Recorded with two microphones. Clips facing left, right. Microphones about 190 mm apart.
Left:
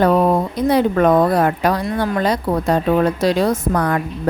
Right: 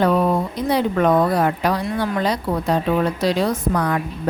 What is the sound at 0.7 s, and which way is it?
Speech, 50° left (ahead or behind).